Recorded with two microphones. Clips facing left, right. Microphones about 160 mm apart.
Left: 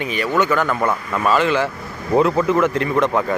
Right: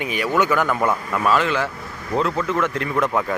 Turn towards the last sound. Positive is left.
turn(degrees=0)  # may be behind; listen again after turning